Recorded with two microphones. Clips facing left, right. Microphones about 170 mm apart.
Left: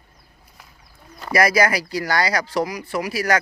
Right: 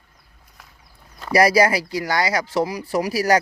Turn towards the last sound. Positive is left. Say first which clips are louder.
# right 3 dB
turn(degrees=-35)  # may be behind; listen again after turning